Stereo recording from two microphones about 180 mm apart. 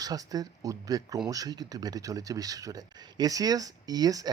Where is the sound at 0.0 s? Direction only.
20° right (ahead or behind).